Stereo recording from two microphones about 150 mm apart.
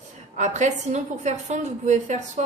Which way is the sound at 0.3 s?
50° right (ahead or behind).